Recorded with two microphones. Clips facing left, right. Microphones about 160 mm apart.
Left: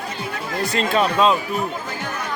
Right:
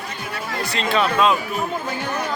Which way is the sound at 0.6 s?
50° left (ahead or behind).